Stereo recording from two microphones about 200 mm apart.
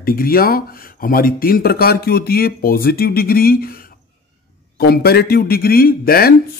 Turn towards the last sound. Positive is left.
turn(degrees=50)  # may be behind; listen again after turning